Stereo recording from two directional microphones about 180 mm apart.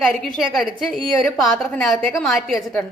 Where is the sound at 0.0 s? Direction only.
5° left (ahead or behind).